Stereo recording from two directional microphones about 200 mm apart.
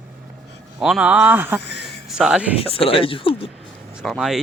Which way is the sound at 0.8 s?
5° right (ahead or behind).